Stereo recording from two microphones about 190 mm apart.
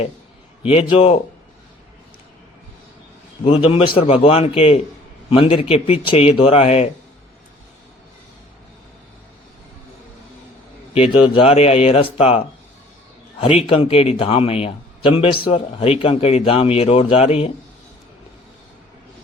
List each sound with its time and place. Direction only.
0.6 s a man's voice: 30° left (ahead or behind)
3.4 s a man's voice: 30° left (ahead or behind)
10.9 s a man's voice: 30° left (ahead or behind)
13.7 s a man's voice: 30° left (ahead or behind)